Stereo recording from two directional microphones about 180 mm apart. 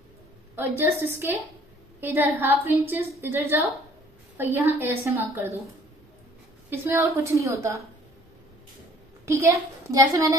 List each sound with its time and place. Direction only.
0.6 s a woman's voice: 10° right (ahead or behind)
6.7 s a woman's voice: 15° right (ahead or behind)
9.2 s a woman's voice: 15° right (ahead or behind)